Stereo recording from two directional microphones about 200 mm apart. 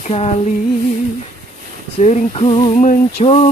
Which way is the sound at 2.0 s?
35° left (ahead or behind).